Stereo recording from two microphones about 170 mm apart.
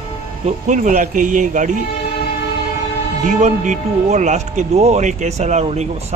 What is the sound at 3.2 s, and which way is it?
Speech, 45° right (ahead or behind).